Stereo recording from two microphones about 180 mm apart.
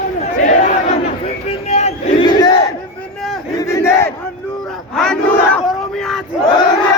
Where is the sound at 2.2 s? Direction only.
25° left (ahead or behind).